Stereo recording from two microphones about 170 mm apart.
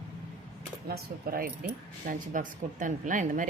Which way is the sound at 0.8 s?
60° right (ahead or behind).